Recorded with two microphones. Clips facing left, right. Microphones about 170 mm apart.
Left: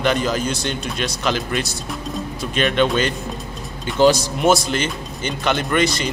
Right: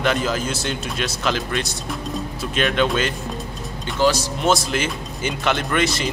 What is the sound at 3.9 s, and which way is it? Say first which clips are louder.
Speech: left 4 dB; 15° left (ahead or behind).